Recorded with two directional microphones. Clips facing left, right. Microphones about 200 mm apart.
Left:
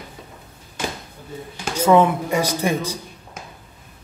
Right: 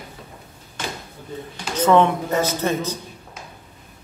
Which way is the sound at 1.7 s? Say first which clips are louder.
Left 1 dB; 10° left (ahead or behind).